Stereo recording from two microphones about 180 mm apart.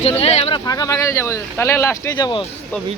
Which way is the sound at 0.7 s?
20° left (ahead or behind).